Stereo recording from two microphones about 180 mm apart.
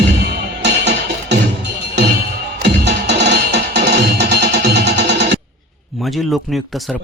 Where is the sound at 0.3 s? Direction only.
70° right (ahead or behind).